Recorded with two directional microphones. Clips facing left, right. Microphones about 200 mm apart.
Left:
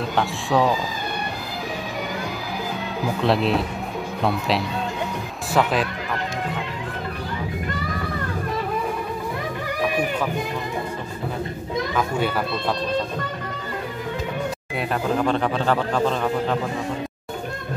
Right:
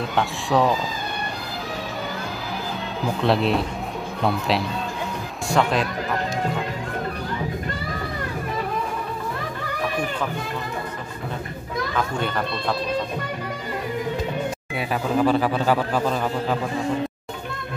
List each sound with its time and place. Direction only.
0.1 s a man's voice: centre (ahead or behind)
3.1 s a man's voice: centre (ahead or behind)
11.9 s speech: 5° left (ahead or behind)
14.8 s a man's voice: 5° right (ahead or behind)